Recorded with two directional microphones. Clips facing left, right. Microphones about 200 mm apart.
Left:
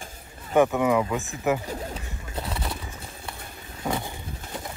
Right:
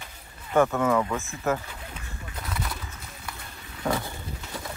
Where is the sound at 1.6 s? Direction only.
40° left (ahead or behind).